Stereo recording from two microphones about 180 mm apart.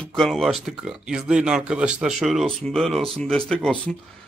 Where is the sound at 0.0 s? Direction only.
5° left (ahead or behind).